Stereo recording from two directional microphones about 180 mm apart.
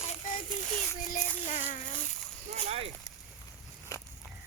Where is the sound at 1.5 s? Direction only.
40° left (ahead or behind).